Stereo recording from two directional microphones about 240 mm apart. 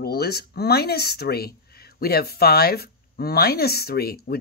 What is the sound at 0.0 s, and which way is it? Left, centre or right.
Speech, left.